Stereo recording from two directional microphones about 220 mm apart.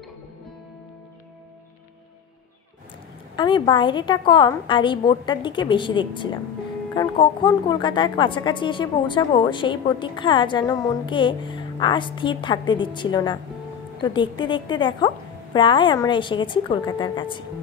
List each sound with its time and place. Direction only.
3.3 s a woman's voice: 20° left (ahead or behind)